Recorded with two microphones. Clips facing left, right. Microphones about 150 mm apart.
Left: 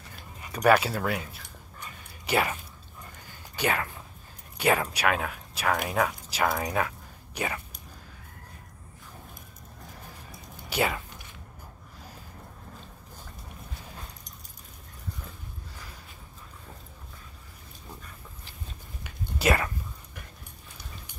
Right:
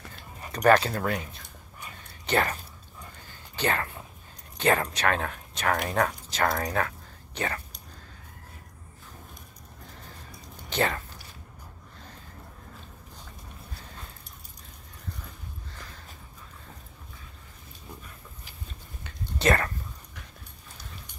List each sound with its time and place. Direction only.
0.7 s speech: 10° left (ahead or behind)
10.7 s speech: 10° left (ahead or behind)
19.0 s a sound: 10° left (ahead or behind)